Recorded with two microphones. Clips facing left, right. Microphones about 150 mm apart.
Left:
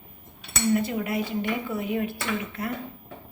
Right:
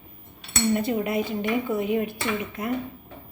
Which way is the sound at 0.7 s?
25° right (ahead or behind).